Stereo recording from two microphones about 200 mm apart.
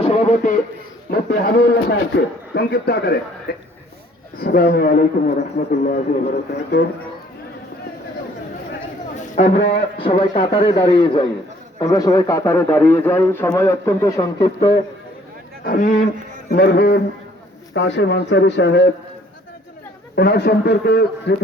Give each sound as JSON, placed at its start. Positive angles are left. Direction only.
{"t": 0.0, "sound": "a sound", "side_deg": 35}
{"t": 1.1, "sound": "a man's voice", "side_deg": 50}
{"t": 2.6, "sound": "a man's voice", "side_deg": 55}
{"t": 9.6, "sound": "a man's voice", "side_deg": 25}
{"t": 15.6, "sound": "a man's voice", "side_deg": 40}
{"t": 20.1, "sound": "a man's voice", "side_deg": 55}